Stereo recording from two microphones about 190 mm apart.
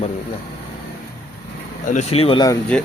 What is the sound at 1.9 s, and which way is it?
Speech, 35° left (ahead or behind).